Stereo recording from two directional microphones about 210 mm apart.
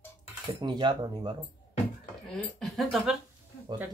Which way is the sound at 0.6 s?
20° right (ahead or behind).